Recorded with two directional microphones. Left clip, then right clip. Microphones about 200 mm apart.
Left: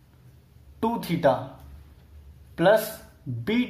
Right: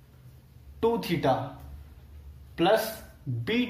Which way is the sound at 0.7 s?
50° left (ahead or behind).